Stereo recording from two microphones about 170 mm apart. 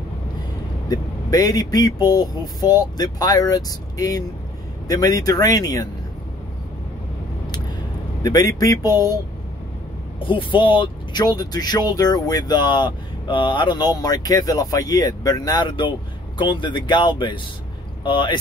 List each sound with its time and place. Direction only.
0.8 s speech: 20° left (ahead or behind)
8.2 s a man's voice: 20° left (ahead or behind)
10.1 s speech: 30° left (ahead or behind)